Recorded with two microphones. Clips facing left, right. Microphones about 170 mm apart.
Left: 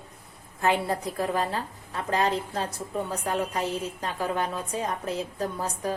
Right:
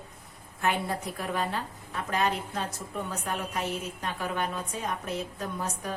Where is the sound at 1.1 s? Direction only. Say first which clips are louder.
Left 4 dB; 35° left (ahead or behind).